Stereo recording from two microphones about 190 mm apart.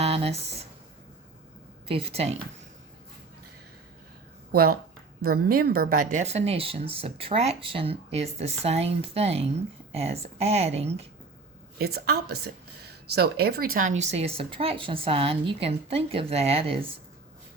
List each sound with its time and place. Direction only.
0.0 s a sound: 30° right (ahead or behind)
1.9 s speech: 30° right (ahead or behind)
5.2 s speech: 50° right (ahead or behind); by 11.1 s 35° right (ahead or behind)
11.8 s a woman's voice: 55° right (ahead or behind); by 16.8 s 30° right (ahead or behind)